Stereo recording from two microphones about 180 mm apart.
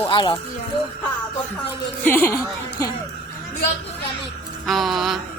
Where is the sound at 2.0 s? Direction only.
10° left (ahead or behind).